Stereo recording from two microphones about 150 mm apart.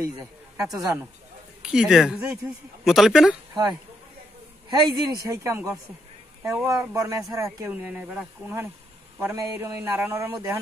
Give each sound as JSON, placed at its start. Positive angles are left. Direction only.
{"t": 0.0, "sound": "speech", "side_deg": -20}
{"t": 1.6, "sound": "speech", "side_deg": -5}
{"t": 4.6, "sound": "speech", "side_deg": -30}
{"t": 7.7, "sound": "speech", "side_deg": -5}